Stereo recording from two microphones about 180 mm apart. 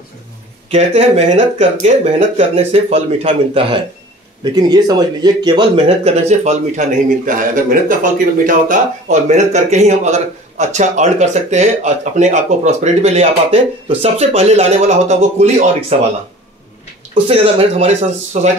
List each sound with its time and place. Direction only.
0.7 s speech: 35° right (ahead or behind)
4.6 s speech: 20° right (ahead or behind)
17.1 s speech: 30° right (ahead or behind)